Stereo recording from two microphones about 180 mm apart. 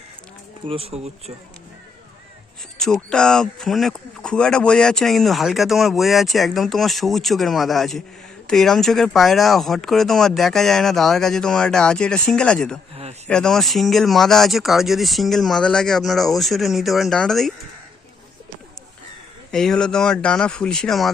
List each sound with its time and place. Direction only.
0.7 s speech: 35° right (ahead or behind)
2.7 s speech: 5° left (ahead or behind)
19.5 s speech: 5° left (ahead or behind)